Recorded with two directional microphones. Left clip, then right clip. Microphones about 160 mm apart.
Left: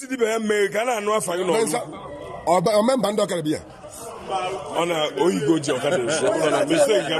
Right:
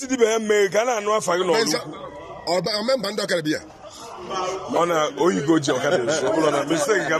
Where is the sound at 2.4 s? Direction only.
20° left (ahead or behind).